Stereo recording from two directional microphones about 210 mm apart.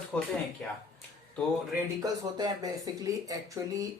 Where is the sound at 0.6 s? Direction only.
5° left (ahead or behind).